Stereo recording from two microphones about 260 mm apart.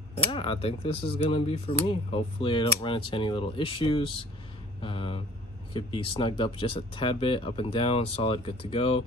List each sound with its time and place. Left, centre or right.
0.3 s speech: left